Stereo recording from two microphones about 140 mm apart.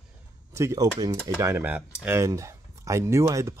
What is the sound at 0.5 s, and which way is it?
Speech, 20° right (ahead or behind).